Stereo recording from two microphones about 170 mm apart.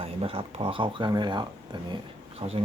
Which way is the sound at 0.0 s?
35° right (ahead or behind).